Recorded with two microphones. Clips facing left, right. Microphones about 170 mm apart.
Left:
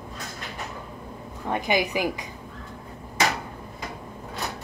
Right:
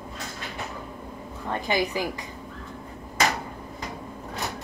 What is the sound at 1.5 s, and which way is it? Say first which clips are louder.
Speech: left 2 dB; 15° left (ahead or behind).